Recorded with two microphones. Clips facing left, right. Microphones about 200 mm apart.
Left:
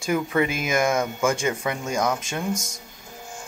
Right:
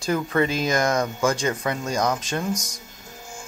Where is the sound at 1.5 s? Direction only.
20° left (ahead or behind).